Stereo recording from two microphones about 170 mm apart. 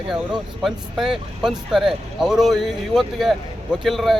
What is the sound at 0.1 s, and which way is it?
Speech, 5° right (ahead or behind).